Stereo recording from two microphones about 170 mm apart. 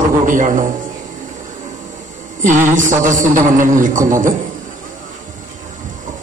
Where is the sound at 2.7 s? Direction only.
50° right (ahead or behind).